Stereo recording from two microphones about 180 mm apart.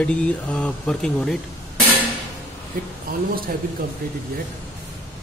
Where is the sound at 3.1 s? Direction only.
55° right (ahead or behind).